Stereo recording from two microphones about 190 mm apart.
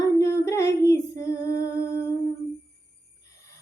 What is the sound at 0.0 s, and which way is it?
Singing, 15° left (ahead or behind).